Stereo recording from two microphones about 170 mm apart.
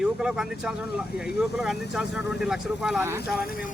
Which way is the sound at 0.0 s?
5° right (ahead or behind).